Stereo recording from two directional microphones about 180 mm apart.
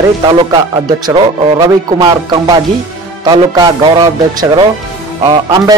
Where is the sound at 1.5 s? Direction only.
20° right (ahead or behind).